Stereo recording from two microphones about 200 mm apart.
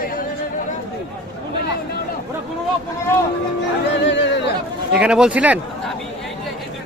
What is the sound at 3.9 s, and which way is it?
Speech, 60° left (ahead or behind).